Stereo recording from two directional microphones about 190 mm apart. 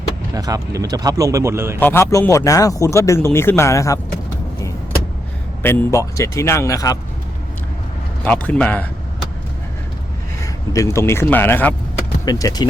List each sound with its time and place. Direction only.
0.3 s speech: 20° right (ahead or behind)
1.8 s speech: 15° left (ahead or behind)
5.6 s speech: 15° left (ahead or behind)
8.2 s speech: 5° left (ahead or behind)
10.4 s speech: 15° left (ahead or behind)